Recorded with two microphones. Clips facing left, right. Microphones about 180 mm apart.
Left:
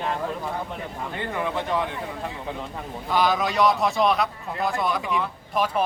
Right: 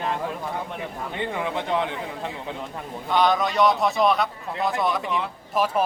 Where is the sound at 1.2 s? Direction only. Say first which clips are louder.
Even; 15° right (ahead or behind).